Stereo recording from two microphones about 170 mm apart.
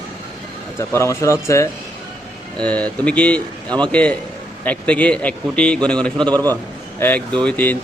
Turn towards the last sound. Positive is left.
turn(degrees=10)  # may be behind; listen again after turning